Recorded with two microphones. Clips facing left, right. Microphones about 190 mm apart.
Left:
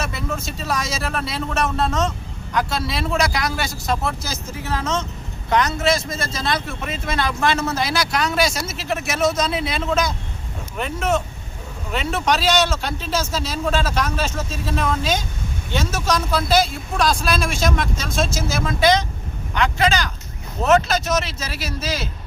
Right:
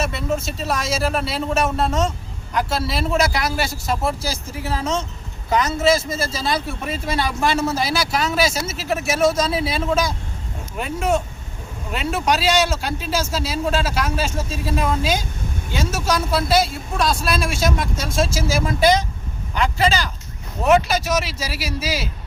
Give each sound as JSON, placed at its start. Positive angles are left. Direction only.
{"t": 0.0, "sound": "speech", "side_deg": 0}
{"t": 6.8, "sound": "speech", "side_deg": -35}
{"t": 7.1, "sound": "a man's voice", "side_deg": -10}
{"t": 20.7, "sound": "a man's voice", "side_deg": -10}